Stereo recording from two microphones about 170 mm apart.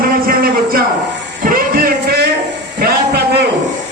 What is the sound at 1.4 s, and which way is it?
Music, 60° right (ahead or behind).